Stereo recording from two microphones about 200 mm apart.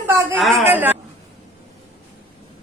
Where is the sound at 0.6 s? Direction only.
10° right (ahead or behind).